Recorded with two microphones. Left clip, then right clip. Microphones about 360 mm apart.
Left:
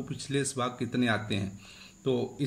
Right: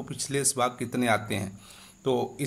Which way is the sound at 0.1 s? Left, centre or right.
Centre.